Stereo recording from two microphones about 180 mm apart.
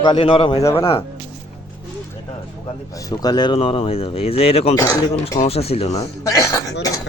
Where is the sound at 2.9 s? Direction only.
20° left (ahead or behind).